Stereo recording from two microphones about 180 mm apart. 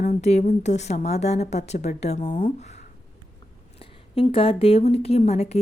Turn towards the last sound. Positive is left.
turn(degrees=40)  # may be behind; listen again after turning